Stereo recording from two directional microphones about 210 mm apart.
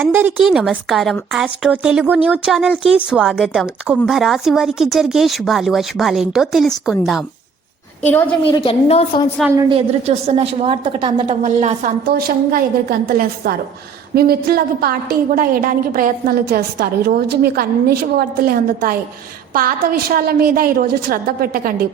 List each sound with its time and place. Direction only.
0.0 s a woman's voice: 10° right (ahead or behind)
8.4 s a woman's voice: 25° left (ahead or behind)
9.6 s a woman's voice: 25° right (ahead or behind)
12.0 s a woman's voice: 45° right (ahead or behind)